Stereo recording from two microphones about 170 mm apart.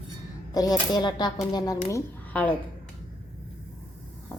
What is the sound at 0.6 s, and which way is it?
Speech, 25° left (ahead or behind).